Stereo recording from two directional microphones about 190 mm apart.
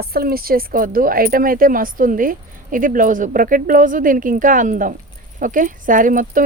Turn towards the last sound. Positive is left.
turn(degrees=-45)  # may be behind; listen again after turning